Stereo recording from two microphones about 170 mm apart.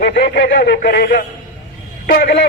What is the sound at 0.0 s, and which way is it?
A man's voice, 65° left (ahead or behind).